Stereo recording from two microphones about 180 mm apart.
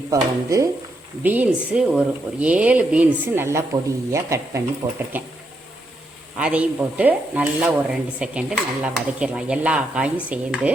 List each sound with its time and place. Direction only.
0.1 s stir: 20° right (ahead or behind)
4.8 s speech: 20° right (ahead or behind)
6.4 s stir: 10° right (ahead or behind)